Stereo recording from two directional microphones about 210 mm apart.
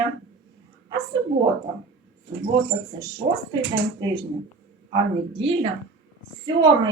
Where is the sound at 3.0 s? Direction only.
20° right (ahead or behind).